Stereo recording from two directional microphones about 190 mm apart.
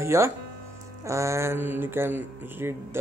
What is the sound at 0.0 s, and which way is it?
Speech, 15° right (ahead or behind).